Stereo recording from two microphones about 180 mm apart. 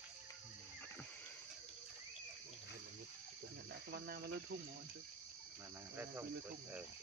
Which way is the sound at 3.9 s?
60° right (ahead or behind).